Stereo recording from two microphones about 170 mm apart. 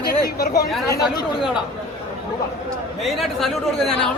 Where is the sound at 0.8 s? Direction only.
20° left (ahead or behind).